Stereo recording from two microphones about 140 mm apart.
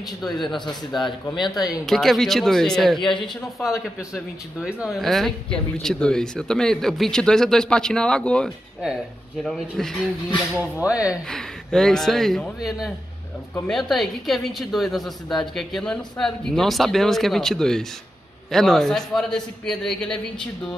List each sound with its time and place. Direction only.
0.2 s speech: centre (ahead or behind)
1.3 s speech: 30° left (ahead or behind)
1.9 s speech: centre (ahead or behind)
3.0 s speech: 35° left (ahead or behind)
3.5 s speech: centre (ahead or behind)
10.5 s speech: 10° right (ahead or behind)
11.2 s speech: 5° left (ahead or behind)